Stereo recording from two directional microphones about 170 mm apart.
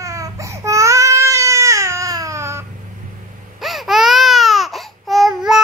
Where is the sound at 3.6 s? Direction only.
Centre (ahead or behind).